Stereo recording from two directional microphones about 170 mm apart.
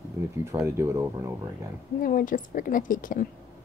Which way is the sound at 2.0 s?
55° left (ahead or behind).